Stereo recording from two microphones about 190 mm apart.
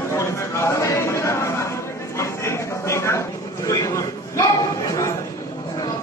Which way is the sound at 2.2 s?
15° left (ahead or behind).